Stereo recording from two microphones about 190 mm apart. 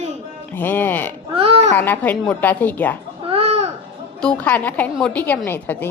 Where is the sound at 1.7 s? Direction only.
10° left (ahead or behind).